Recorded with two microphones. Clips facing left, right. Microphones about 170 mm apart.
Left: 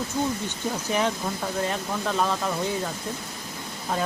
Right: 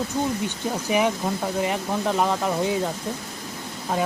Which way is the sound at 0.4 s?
15° right (ahead or behind).